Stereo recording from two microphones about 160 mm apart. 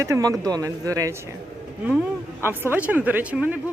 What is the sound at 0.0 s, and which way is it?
Speech, 20° right (ahead or behind).